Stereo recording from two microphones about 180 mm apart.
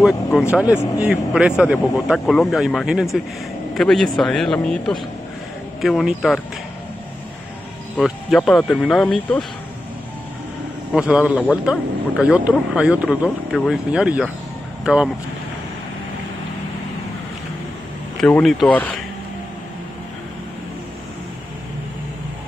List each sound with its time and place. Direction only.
0.0 s speech: centre (ahead or behind)
8.0 s speech: centre (ahead or behind)
11.0 s a man's voice: 5° right (ahead or behind)
18.2 s speech: 5° left (ahead or behind)